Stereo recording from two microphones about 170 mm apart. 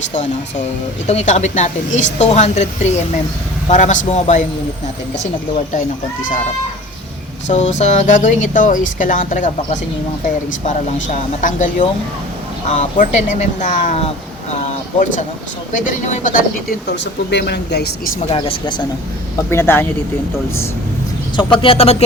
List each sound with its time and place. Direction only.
1.0 s speech: 45° left (ahead or behind)
7.4 s speech: 45° left (ahead or behind)
15.8 s speech: 50° left (ahead or behind)
16.8 s speech: 90° left; by 18.1 s 75° left (ahead or behind)
18.2 s speech: 35° left (ahead or behind)
19.5 s speech: 15° left (ahead or behind)
21.3 s speech: 30° left (ahead or behind)